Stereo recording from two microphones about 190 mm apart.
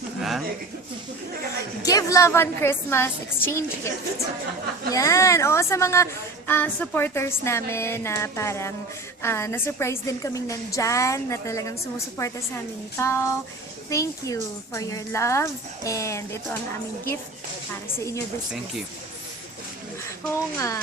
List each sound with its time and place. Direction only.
0.2 s speech: centre (ahead or behind)
1.8 s a woman's voice: 20° left (ahead or behind)
17.9 s a woman's voice: 15° left (ahead or behind)
20.2 s a woman's voice: 15° left (ahead or behind)